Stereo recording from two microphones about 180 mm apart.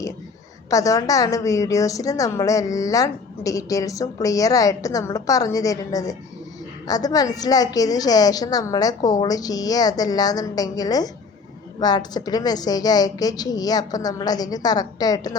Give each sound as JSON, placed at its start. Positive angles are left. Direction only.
{"t": 0.7, "sound": "a woman's voice", "side_deg": 20}